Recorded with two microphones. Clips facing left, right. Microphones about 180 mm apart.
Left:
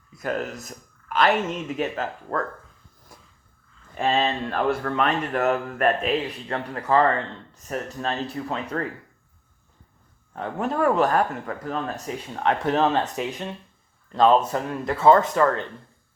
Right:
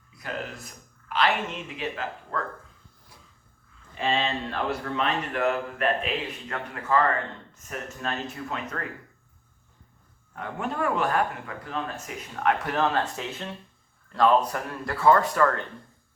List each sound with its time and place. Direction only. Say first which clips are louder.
0.1 s speech: left 7 dB; 45° left (ahead or behind)
3.1 s a sound: left 5 dB; 45° left (ahead or behind)
3.9 s speech: left 4 dB; 45° left (ahead or behind)
10.3 s speech: left 5 dB; 35° left (ahead or behind); by 15.6 s 20° left (ahead or behind)